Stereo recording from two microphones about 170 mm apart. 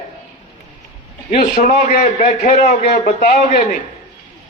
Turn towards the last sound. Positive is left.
turn(degrees=55)  # may be behind; listen again after turning